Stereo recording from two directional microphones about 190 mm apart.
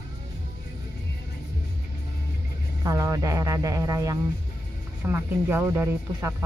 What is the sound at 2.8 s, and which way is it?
Speech, 20° right (ahead or behind).